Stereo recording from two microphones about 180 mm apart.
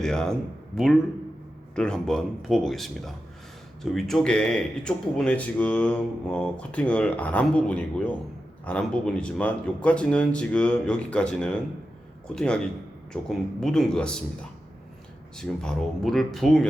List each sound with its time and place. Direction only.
0.0 s speech: 5° left (ahead or behind)
1.7 s speech: 5° left (ahead or behind)
15.4 s speech: 5° left (ahead or behind)